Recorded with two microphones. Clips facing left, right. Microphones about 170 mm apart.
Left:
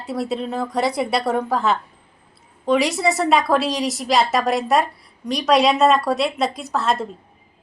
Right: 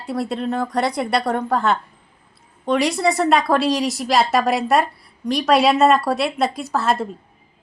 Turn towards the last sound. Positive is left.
turn(degrees=0)  # may be behind; listen again after turning